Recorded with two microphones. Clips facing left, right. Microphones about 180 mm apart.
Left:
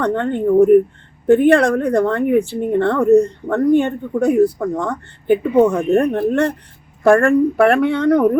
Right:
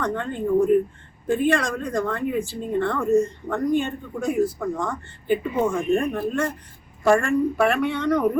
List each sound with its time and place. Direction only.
0.0 s speech: 65° left (ahead or behind)